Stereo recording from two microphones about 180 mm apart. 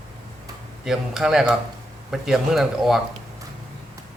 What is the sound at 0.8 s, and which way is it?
Speech, centre (ahead or behind).